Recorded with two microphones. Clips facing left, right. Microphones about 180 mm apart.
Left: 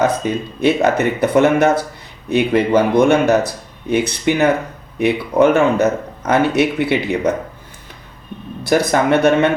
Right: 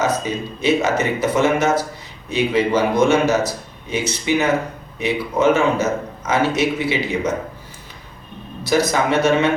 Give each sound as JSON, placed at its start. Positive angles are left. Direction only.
{"t": 0.0, "sound": "speech", "side_deg": 60}
{"t": 8.6, "sound": "speech", "side_deg": 60}